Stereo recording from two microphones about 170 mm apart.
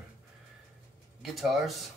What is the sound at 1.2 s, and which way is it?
Speech, centre (ahead or behind).